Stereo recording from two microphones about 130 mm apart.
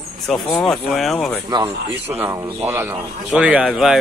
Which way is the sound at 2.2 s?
25° right (ahead or behind).